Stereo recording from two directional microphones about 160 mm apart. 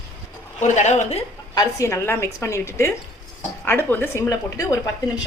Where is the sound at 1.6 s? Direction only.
20° left (ahead or behind).